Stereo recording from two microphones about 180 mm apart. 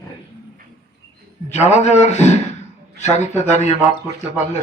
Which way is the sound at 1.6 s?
40° left (ahead or behind).